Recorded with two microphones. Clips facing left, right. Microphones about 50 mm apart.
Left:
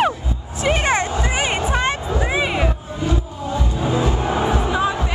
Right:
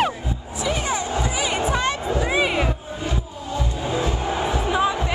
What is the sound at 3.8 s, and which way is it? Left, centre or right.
Music, centre.